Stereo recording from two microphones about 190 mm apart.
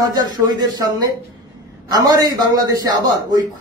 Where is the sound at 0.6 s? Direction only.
20° right (ahead or behind).